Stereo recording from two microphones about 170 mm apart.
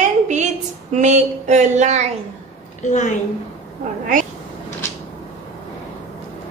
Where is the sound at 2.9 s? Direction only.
45° left (ahead or behind).